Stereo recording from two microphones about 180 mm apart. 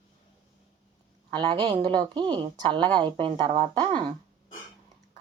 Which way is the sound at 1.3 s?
25° right (ahead or behind).